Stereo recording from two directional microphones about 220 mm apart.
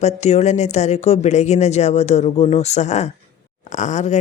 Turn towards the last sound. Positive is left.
turn(degrees=35)  # may be behind; listen again after turning